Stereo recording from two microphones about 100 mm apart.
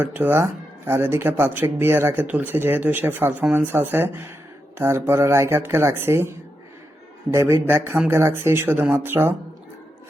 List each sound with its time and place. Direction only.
0.0 s speech: 20° right (ahead or behind)